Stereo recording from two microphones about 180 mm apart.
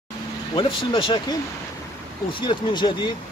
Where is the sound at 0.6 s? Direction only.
30° left (ahead or behind).